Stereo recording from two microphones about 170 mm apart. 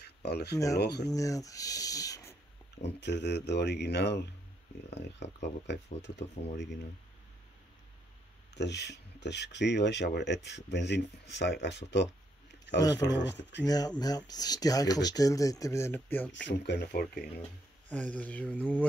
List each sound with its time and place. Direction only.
0.0 s speech: 70° left (ahead or behind)
1.0 s speech: 20° left (ahead or behind)
2.8 s speech: 90° left
5.2 s speech: 90° left
6.4 s speech: 70° left (ahead or behind)
8.5 s speech: 85° left
12.8 s speech: 25° left (ahead or behind)
13.1 s speech: 90° left
13.7 s speech: 20° left (ahead or behind)
16.4 s speech: 85° left; by 17.3 s 60° left (ahead or behind)
17.8 s speech: 10° left (ahead or behind)